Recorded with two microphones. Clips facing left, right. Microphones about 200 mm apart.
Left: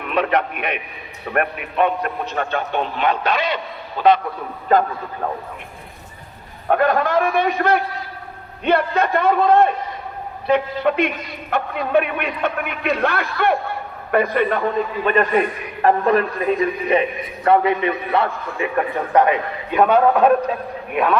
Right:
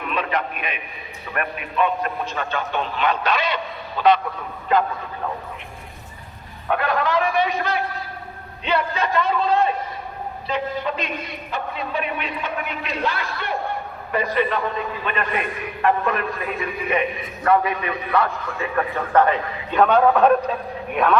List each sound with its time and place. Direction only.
0.1 s a man's voice: 65° left (ahead or behind); by 3.4 s 50° left (ahead or behind)
4.7 s a man's voice: 45° left (ahead or behind)
6.7 s a man's voice: 45° left (ahead or behind)
15.0 s a man's voice: 40° left (ahead or behind)
17.4 s a man's voice: 25° left (ahead or behind)
18.6 s a man's voice: 15° left (ahead or behind)